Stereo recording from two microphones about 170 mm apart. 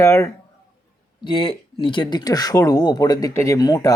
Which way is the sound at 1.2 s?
25° left (ahead or behind).